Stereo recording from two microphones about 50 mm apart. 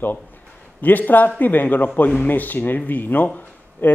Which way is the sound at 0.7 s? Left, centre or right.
Left.